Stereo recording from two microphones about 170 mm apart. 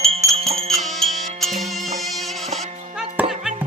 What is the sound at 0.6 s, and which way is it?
Music, centre (ahead or behind).